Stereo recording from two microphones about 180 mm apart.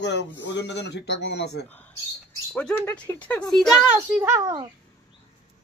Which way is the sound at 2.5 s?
5° left (ahead or behind).